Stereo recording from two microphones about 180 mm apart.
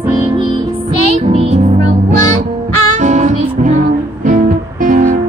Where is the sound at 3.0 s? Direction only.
40° right (ahead or behind).